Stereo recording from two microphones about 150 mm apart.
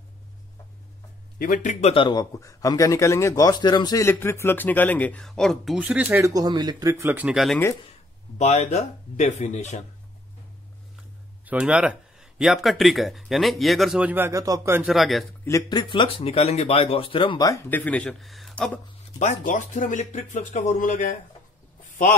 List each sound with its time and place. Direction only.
1.4 s speech: 60° left (ahead or behind); by 2.2 s 35° left (ahead or behind)
2.3 s a man's voice: 25° left (ahead or behind); by 6.3 s 10° right (ahead or behind)
6.3 s speech: 25° right (ahead or behind); by 7.4 s 10° right (ahead or behind)
8.4 s speech: 50° left (ahead or behind)
11.4 s speech: 10° right (ahead or behind)
14.9 s speech: centre (ahead or behind)
15.4 s speech: 20° left (ahead or behind)
17.4 s speech: 15° left (ahead or behind)
19.1 s speech: 55° left (ahead or behind)